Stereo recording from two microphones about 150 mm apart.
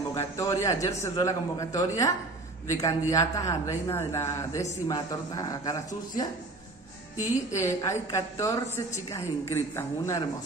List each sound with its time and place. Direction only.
0.2 s a woman's voice: 20° left (ahead or behind)
7.5 s a woman's voice: 20° left (ahead or behind)